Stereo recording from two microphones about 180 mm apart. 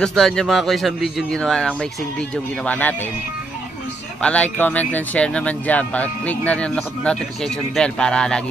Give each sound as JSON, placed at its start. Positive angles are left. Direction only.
{"t": 0.0, "sound": "a man's voice", "side_deg": 5}
{"t": 4.2, "sound": "speech", "side_deg": 5}